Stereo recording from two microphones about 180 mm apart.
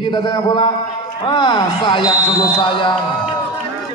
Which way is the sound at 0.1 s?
25° left (ahead or behind).